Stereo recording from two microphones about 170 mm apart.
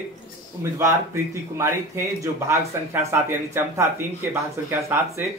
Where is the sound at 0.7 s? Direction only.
15° right (ahead or behind).